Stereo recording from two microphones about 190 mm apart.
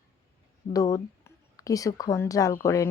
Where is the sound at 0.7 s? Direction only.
20° left (ahead or behind).